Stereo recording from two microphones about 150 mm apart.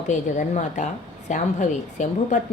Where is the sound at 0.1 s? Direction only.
55° left (ahead or behind).